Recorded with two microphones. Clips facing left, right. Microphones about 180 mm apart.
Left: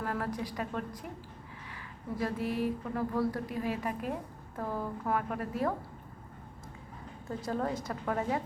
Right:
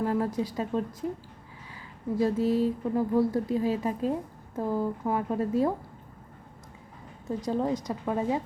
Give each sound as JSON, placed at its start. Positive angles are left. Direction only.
{"t": 0.0, "sound": "a woman's voice", "side_deg": -20}
{"t": 2.1, "sound": "speech", "side_deg": -25}
{"t": 7.3, "sound": "a woman's voice", "side_deg": -15}